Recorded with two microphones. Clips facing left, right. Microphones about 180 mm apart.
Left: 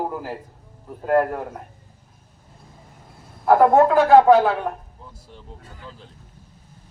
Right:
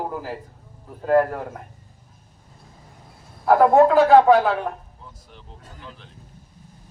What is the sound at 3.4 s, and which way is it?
Speech, 5° left (ahead or behind).